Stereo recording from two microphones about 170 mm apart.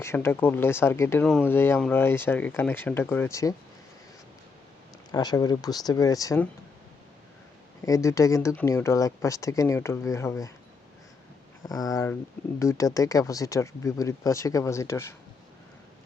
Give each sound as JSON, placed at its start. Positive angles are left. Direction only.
{"t": 0.0, "sound": "speech", "side_deg": 15}
{"t": 5.1, "sound": "speech", "side_deg": 25}
{"t": 7.8, "sound": "speech", "side_deg": 15}
{"t": 11.6, "sound": "speech", "side_deg": 20}